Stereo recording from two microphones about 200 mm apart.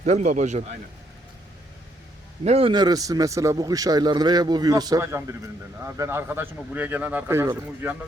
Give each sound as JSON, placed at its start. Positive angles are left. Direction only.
{"t": 0.0, "sound": "speech", "side_deg": -35}
{"t": 2.4, "sound": "a man's voice", "side_deg": -30}